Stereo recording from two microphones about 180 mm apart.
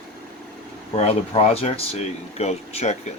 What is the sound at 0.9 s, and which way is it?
Speech, 35° left (ahead or behind).